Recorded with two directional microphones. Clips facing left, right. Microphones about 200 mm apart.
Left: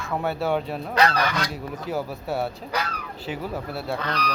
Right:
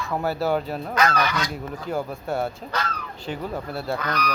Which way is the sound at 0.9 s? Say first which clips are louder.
Left 1 dB; 35° left (ahead or behind).